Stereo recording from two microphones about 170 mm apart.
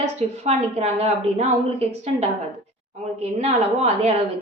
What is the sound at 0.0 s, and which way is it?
A woman's voice, 40° right (ahead or behind).